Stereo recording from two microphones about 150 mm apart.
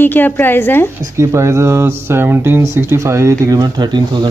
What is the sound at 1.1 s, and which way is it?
Speech, 20° right (ahead or behind).